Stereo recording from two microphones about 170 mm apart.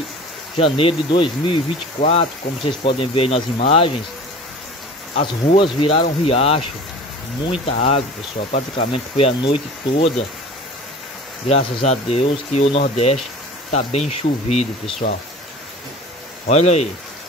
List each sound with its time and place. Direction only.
0.6 s speech: 35° left (ahead or behind)
5.1 s speech: 35° left (ahead or behind)
7.6 s speech: 40° left (ahead or behind)
11.4 s speech: 40° left (ahead or behind)
16.4 s speech: 40° left (ahead or behind)